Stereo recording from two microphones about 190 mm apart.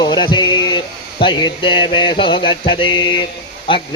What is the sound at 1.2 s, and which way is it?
A man's voice, 25° left (ahead or behind).